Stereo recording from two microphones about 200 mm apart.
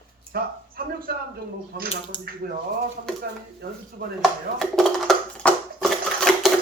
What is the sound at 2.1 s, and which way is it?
Speech, 25° left (ahead or behind).